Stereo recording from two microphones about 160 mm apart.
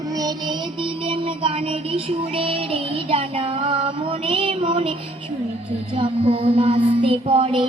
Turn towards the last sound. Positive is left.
turn(degrees=-35)  # may be behind; listen again after turning